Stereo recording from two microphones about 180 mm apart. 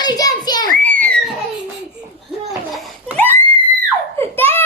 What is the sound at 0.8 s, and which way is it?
Children playing, 10° left (ahead or behind).